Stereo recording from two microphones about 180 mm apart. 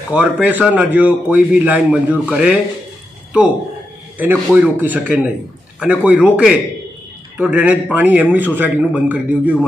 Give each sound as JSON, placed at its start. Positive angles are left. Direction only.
{"t": 0.1, "sound": "a man's voice", "side_deg": -10}
{"t": 4.2, "sound": "a man's voice", "side_deg": -10}